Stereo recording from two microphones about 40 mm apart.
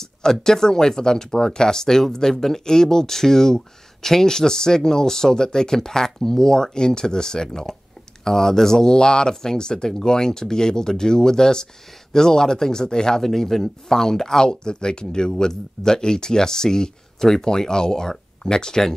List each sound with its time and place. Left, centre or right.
0.0 s a man's voice: centre